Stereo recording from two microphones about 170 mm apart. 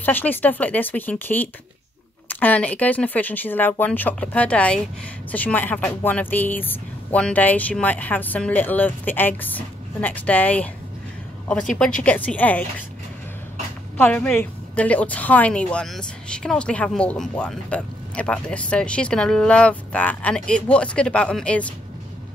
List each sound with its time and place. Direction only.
0.0 s a woman's voice: 10° left (ahead or behind)
13.9 s a woman's voice: 10° left (ahead or behind)